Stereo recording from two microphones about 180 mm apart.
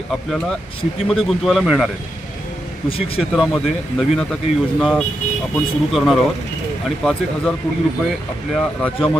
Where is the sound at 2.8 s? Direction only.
30° left (ahead or behind).